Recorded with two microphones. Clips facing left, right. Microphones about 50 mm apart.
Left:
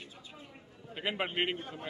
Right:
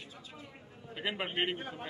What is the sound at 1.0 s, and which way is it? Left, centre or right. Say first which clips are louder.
Speech: left 1 dB; centre.